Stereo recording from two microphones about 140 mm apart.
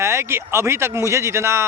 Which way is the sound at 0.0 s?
20° right (ahead or behind).